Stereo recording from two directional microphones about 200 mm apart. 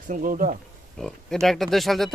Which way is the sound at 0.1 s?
45° right (ahead or behind).